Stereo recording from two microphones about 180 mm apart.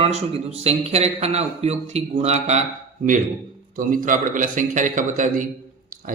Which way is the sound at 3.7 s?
50° right (ahead or behind).